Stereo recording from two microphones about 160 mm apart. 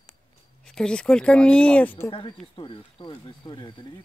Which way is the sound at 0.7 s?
5° left (ahead or behind).